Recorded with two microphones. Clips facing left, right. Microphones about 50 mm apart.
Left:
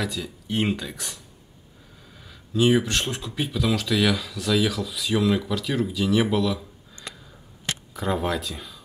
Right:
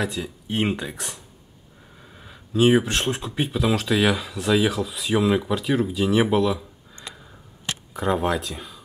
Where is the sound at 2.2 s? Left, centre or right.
Right.